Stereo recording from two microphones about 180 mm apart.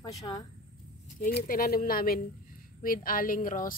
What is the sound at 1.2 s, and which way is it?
Speech, 55° left (ahead or behind).